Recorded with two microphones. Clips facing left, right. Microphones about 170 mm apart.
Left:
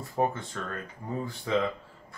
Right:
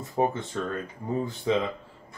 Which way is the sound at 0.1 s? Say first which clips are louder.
Right 3 dB; 20° right (ahead or behind).